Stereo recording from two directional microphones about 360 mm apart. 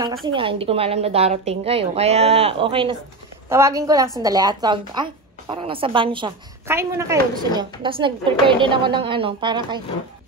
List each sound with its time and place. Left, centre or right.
0.3 s a woman's voice: centre